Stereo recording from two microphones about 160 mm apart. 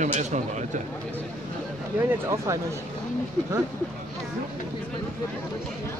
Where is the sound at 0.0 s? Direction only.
50° right (ahead or behind).